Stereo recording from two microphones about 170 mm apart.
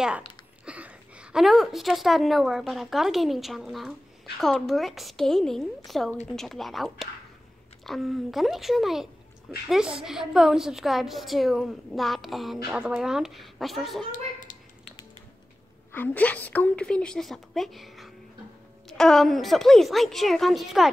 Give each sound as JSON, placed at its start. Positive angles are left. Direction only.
{"t": 0.7, "sound": "a woman's voice", "side_deg": -5}
{"t": 15.9, "sound": "a woman's voice", "side_deg": 10}